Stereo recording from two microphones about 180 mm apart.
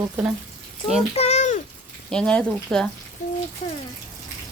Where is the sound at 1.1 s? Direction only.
35° left (ahead or behind).